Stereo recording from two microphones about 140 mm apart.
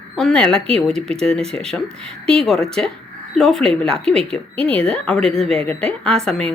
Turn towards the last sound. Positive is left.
turn(degrees=5)  # may be behind; listen again after turning